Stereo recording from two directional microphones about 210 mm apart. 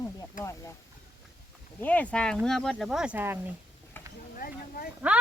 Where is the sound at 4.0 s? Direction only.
10° left (ahead or behind).